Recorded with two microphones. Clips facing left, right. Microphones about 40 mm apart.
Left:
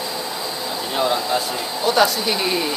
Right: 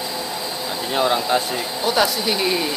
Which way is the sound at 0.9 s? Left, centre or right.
Centre.